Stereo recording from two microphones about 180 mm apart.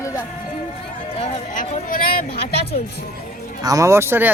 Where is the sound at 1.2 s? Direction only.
30° left (ahead or behind).